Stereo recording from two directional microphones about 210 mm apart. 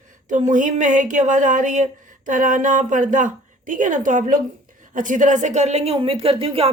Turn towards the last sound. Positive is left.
turn(degrees=-25)  # may be behind; listen again after turning